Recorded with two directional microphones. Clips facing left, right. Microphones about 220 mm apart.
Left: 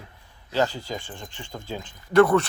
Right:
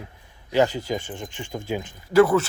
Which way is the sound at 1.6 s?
10° right (ahead or behind).